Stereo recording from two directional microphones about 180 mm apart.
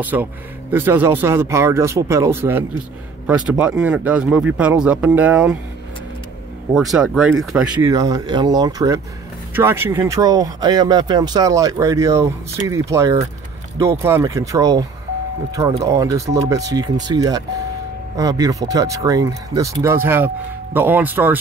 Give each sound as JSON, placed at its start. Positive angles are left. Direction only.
{"t": 0.0, "sound": "speech", "side_deg": -10}
{"t": 6.7, "sound": "speech", "side_deg": 0}
{"t": 7.8, "sound": "speech", "side_deg": -20}